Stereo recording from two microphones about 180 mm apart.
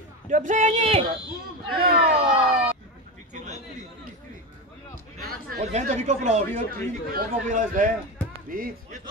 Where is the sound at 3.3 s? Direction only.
40° right (ahead or behind).